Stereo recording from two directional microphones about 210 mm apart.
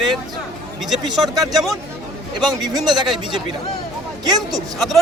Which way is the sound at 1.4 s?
Centre (ahead or behind).